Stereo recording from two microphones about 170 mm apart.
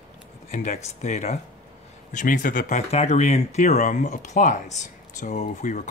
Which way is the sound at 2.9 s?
40° left (ahead or behind).